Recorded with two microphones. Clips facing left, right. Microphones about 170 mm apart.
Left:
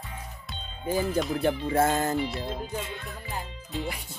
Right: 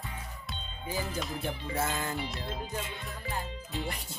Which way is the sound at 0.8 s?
50° left (ahead or behind).